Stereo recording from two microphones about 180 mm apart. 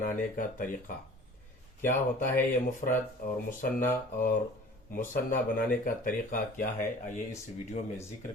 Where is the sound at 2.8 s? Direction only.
50° left (ahead or behind).